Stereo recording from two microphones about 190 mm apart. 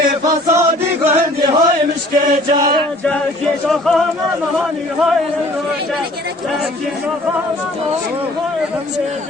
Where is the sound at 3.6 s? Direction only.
Centre (ahead or behind).